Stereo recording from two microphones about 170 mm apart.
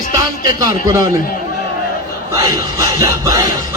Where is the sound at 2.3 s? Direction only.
20° right (ahead or behind).